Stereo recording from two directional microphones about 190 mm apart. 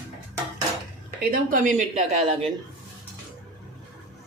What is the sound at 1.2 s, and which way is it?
Speech, 45° right (ahead or behind).